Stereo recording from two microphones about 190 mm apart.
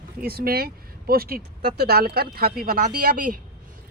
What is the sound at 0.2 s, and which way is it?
Speech, 55° right (ahead or behind).